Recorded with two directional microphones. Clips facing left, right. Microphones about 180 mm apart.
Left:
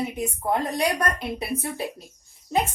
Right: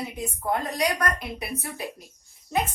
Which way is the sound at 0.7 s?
25° left (ahead or behind).